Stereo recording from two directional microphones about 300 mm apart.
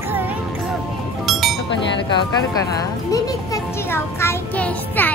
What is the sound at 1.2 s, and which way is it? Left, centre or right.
Chink, centre.